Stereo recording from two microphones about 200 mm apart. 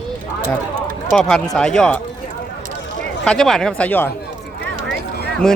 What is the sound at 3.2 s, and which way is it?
Speech, centre (ahead or behind).